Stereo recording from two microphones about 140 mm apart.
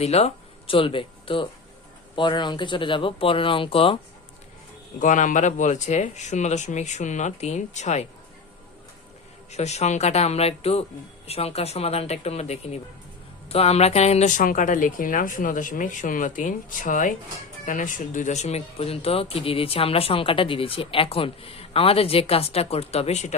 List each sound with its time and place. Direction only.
0.0 s speech: 50° left (ahead or behind)
4.9 s speech: 65° left (ahead or behind)
9.5 s a woman's voice: 50° left (ahead or behind)